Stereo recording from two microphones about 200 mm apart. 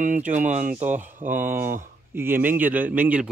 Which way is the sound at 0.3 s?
40° right (ahead or behind).